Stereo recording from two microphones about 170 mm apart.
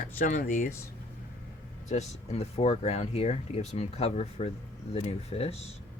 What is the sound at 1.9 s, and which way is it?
Speech, 40° left (ahead or behind).